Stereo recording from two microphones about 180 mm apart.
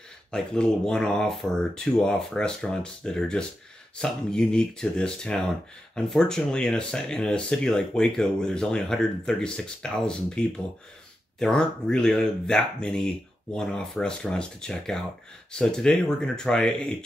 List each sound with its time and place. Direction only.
0.3 s speech: 5° left (ahead or behind)